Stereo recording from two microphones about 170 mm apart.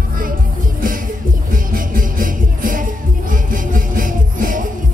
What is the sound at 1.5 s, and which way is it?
Music, 55° right (ahead or behind).